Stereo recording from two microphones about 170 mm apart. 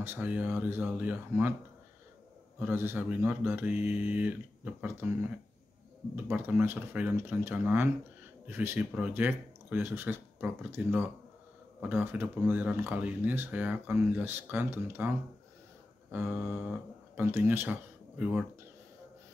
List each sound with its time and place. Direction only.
0.0 s speech: 10° right (ahead or behind)
2.6 s speech: 15° right (ahead or behind)
16.3 s speech: 10° right (ahead or behind)